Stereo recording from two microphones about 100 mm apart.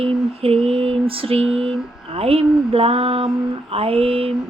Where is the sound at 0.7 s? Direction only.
75° right (ahead or behind).